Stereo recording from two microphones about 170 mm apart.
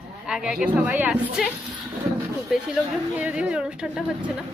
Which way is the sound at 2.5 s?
5° right (ahead or behind).